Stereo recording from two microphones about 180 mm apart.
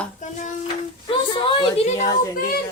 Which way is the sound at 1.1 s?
30° left (ahead or behind).